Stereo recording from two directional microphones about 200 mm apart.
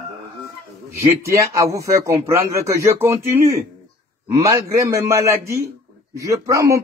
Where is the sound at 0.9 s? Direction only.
15° right (ahead or behind).